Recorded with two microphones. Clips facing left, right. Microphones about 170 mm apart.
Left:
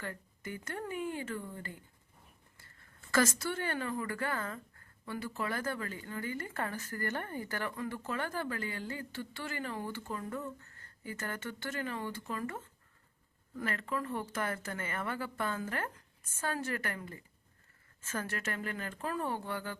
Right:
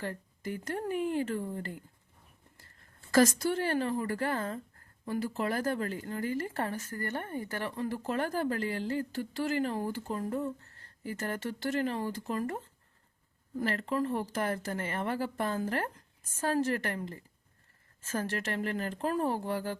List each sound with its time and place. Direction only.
0.0 s speech: 35° right (ahead or behind)
2.8 s speech: 35° right (ahead or behind)
7.1 s speech: 20° right (ahead or behind)
7.8 s speech: 35° right (ahead or behind)